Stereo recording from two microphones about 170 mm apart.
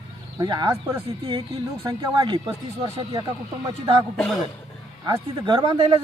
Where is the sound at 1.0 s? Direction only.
30° right (ahead or behind).